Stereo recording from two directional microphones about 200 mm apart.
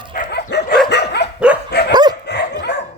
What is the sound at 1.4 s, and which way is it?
Dog, 5° right (ahead or behind).